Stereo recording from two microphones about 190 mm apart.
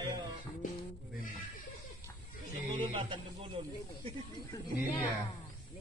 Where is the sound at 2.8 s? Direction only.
25° right (ahead or behind).